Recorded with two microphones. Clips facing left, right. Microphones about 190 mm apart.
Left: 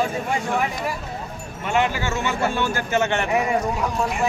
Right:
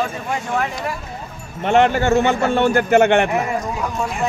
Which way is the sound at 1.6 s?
55° right (ahead or behind).